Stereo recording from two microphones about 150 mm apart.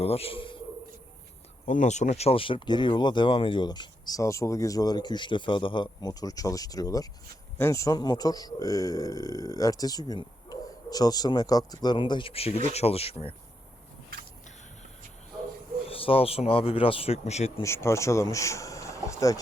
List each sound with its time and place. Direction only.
0.0 s a man's voice: 40° left (ahead or behind)
1.6 s speech: 55° left (ahead or behind)
15.9 s speech: 40° left (ahead or behind)
17.6 s speech: 15° left (ahead or behind)